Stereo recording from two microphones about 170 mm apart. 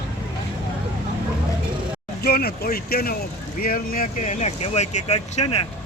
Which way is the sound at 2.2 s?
65° left (ahead or behind).